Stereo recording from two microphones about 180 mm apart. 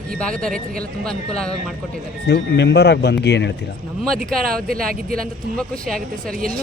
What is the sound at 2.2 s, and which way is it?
Speech, 70° left (ahead or behind).